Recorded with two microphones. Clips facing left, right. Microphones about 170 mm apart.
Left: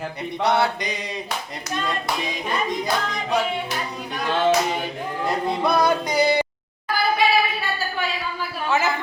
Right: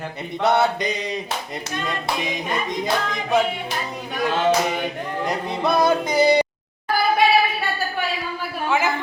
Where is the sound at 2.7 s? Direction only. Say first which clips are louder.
Right 1 dB; 20° right (ahead or behind).